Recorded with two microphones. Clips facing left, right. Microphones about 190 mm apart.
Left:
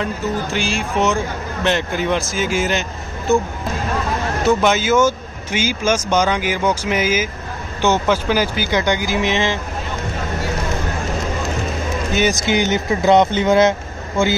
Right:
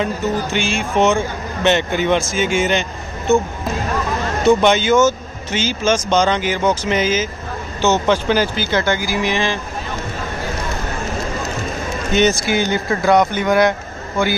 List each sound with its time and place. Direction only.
0.0 s speech: centre (ahead or behind)
4.5 s speech: 5° left (ahead or behind); by 9.6 s 20° left (ahead or behind)
12.1 s speech: 5° left (ahead or behind)
12.4 s speech: 20° left (ahead or behind)